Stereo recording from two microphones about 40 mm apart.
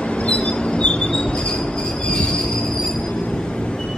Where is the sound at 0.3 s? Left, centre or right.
Left.